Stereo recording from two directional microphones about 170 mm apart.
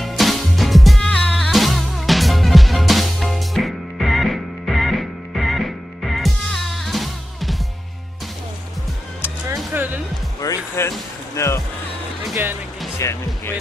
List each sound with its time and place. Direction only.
0.0 s music: centre (ahead or behind)
9.7 s music: 10° right (ahead or behind)
10.4 s music: 20° left (ahead or behind)
13.0 s music: 15° left (ahead or behind)